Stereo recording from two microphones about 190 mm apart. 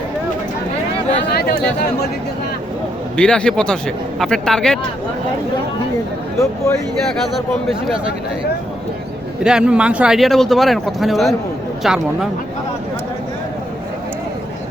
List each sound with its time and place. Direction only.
1.3 s chatter: 55° left (ahead or behind)
3.2 s speech: 5° left (ahead or behind)
9.4 s speech: 5° right (ahead or behind)